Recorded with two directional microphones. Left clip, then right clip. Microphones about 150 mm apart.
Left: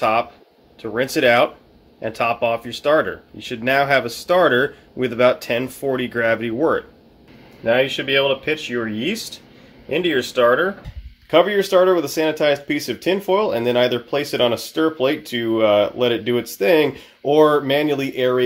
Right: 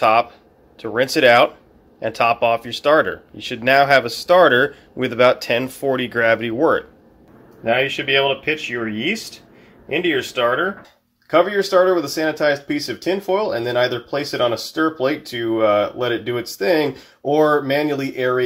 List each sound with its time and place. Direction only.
0.0 s speech: 5° left (ahead or behind)
7.6 s speech: 20° left (ahead or behind)